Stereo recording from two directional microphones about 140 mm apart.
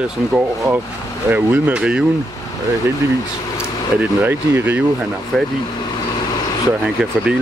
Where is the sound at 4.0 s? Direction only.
15° right (ahead or behind).